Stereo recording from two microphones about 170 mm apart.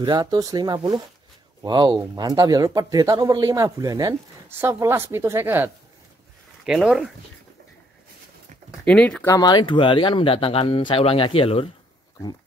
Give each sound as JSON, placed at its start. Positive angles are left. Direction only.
{"t": 0.0, "sound": "speech", "side_deg": -25}
{"t": 6.6, "sound": "speech", "side_deg": 0}
{"t": 8.8, "sound": "speech", "side_deg": 5}
{"t": 9.3, "sound": "speech", "side_deg": 25}